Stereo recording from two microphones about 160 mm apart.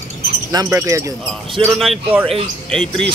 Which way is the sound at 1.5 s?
Centre (ahead or behind).